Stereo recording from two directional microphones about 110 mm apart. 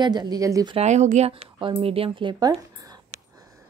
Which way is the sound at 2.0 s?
45° right (ahead or behind).